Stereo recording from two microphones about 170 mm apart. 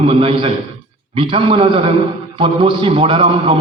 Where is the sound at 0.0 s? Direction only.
35° right (ahead or behind).